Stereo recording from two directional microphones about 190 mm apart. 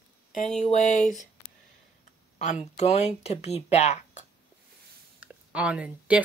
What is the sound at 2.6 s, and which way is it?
Speech, 35° left (ahead or behind).